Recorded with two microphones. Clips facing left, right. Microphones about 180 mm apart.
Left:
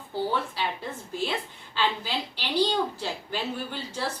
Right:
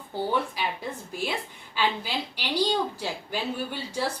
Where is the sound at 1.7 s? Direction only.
10° right (ahead or behind).